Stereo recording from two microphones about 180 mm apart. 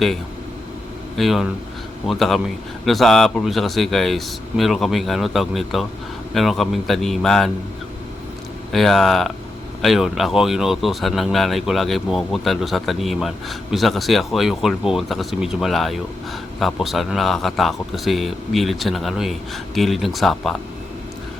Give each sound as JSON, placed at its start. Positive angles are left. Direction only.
{"t": 1.1, "sound": "speech", "side_deg": 0}
{"t": 8.7, "sound": "speech", "side_deg": 0}